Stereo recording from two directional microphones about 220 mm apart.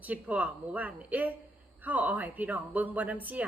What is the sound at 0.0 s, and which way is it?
A woman's voice, 5° right (ahead or behind).